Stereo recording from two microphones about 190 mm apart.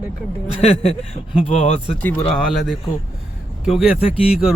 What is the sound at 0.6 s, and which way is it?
Speech, 35° left (ahead or behind).